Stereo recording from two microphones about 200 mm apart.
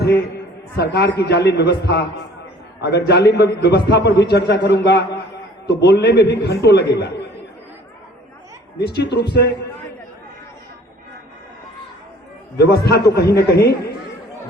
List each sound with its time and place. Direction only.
0.8 s a man's voice: 55° left (ahead or behind)
8.8 s a man's voice: 55° left (ahead or behind)
12.5 s a man's voice: 50° left (ahead or behind)